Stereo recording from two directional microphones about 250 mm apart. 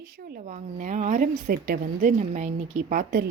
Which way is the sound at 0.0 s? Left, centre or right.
Right.